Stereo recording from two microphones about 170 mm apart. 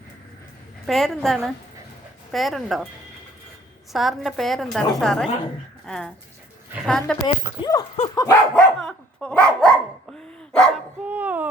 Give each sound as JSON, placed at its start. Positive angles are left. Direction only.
{"t": 0.9, "sound": "a woman's voice", "side_deg": 0}
{"t": 3.9, "sound": "a woman's voice", "side_deg": 0}
{"t": 7.6, "sound": "a sound", "side_deg": 20}
{"t": 8.5, "sound": "dog", "side_deg": 5}
{"t": 11.0, "sound": "speech", "side_deg": -10}